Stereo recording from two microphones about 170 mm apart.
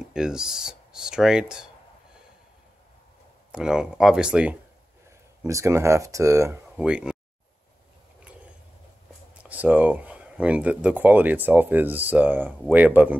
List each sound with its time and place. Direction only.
0.1 s speech: 5° right (ahead or behind)
3.5 s speech: 5° right (ahead or behind)
5.4 s speech: 15° right (ahead or behind)
6.8 s speech: 5° right (ahead or behind)
9.4 s speech: 10° right (ahead or behind)